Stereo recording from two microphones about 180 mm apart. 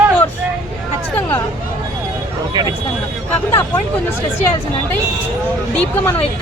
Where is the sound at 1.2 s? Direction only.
10° left (ahead or behind).